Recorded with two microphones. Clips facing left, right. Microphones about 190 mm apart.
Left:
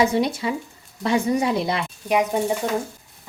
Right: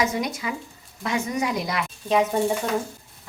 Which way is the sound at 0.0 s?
30° left (ahead or behind).